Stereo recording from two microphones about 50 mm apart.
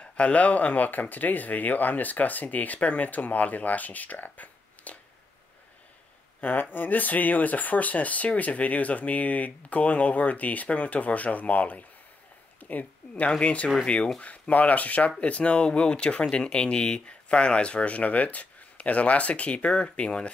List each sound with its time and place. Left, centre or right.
0.0 s speech: left
6.4 s speech: left
12.5 s a sound: left
13.1 s speech: left